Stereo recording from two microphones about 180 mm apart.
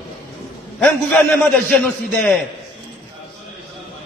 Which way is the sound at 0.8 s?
5° left (ahead or behind).